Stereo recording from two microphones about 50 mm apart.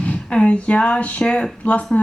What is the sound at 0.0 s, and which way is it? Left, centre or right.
A woman's voice, left.